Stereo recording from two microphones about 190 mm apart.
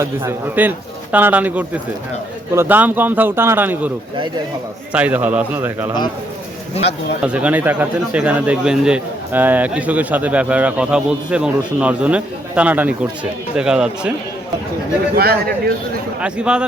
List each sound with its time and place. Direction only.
0.0 s speech: 10° right (ahead or behind)
7.3 s speech: 5° right (ahead or behind)
15.1 s speech: 55° right (ahead or behind)
16.2 s speech: 5° right (ahead or behind)